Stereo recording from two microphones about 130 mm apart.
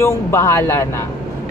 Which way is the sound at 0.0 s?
20° left (ahead or behind).